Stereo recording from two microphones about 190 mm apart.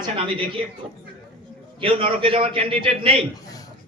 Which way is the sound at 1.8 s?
30° right (ahead or behind).